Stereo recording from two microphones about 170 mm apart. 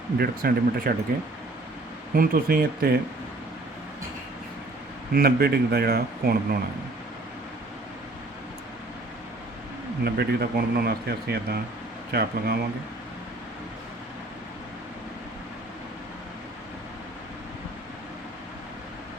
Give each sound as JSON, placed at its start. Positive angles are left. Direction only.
{"t": 0.2, "sound": "speech", "side_deg": -65}
{"t": 2.1, "sound": "speech", "side_deg": -60}
{"t": 5.1, "sound": "speech", "side_deg": -65}
{"t": 10.0, "sound": "speech", "side_deg": -70}